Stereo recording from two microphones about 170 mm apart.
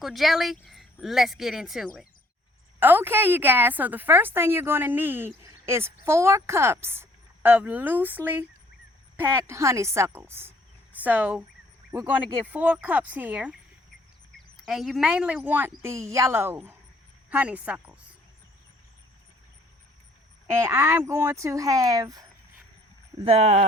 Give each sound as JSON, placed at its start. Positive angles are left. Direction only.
{"t": 0.0, "sound": "speech", "side_deg": 0}
{"t": 2.8, "sound": "a woman's voice", "side_deg": -10}
{"t": 20.5, "sound": "a woman's voice", "side_deg": -15}
{"t": 23.2, "sound": "speech", "side_deg": -35}